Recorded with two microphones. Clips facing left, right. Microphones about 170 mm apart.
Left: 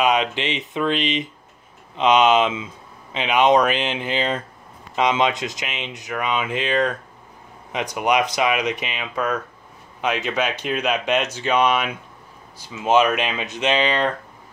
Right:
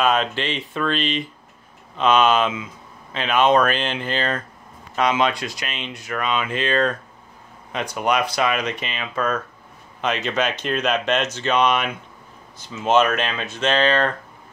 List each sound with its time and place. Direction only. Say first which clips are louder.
0.0 s speech: left 1 dB; 15° left (ahead or behind)